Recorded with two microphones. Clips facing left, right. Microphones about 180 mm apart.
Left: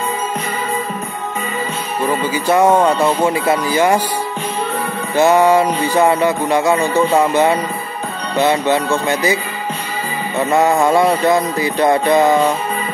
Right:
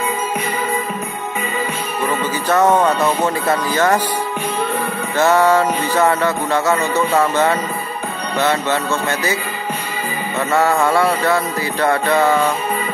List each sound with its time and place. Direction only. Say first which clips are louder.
2.0 s music: left 3 dB; 10° left (ahead or behind)
5.1 s music: left 2 dB; 15° left (ahead or behind)
10.5 s music: left 2 dB; 15° left (ahead or behind)